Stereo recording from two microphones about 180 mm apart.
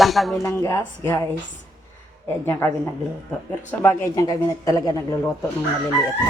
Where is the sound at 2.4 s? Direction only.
10° left (ahead or behind).